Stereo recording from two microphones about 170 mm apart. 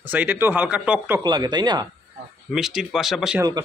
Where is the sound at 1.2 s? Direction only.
25° right (ahead or behind).